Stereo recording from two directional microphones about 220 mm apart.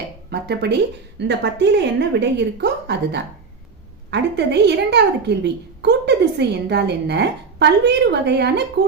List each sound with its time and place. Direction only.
0.3 s a woman's voice: 50° right (ahead or behind)